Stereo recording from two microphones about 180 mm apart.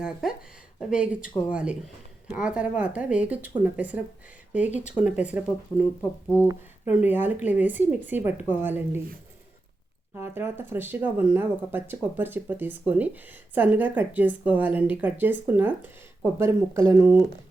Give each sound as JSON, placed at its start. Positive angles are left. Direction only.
{"t": 0.0, "sound": "speech", "side_deg": -5}
{"t": 4.8, "sound": "speech", "side_deg": 45}
{"t": 5.0, "sound": "speech", "side_deg": -5}
{"t": 6.0, "sound": "speech", "side_deg": 10}
{"t": 6.8, "sound": "speech", "side_deg": -10}
{"t": 10.2, "sound": "speech", "side_deg": -15}